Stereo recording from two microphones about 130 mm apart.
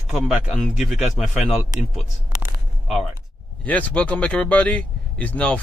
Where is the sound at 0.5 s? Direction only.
Centre (ahead or behind).